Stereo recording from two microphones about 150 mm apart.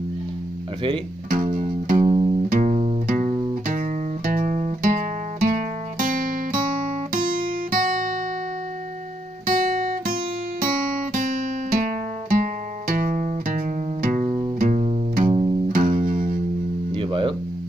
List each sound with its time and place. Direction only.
1.3 s music: 60° right (ahead or behind)
2.0 s music: 35° right (ahead or behind)
2.5 s music: 50° right (ahead or behind)
4.2 s music: 65° right (ahead or behind); by 5.5 s 50° right (ahead or behind)
5.9 s music: 65° right (ahead or behind)
7.1 s guitar: 65° right (ahead or behind)
9.6 s guitar: 65° right (ahead or behind)
11.1 s music: 65° right (ahead or behind)
14.1 s music: 40° right (ahead or behind)
15.7 s music: 60° right (ahead or behind)
16.9 s guitar: 35° right (ahead or behind)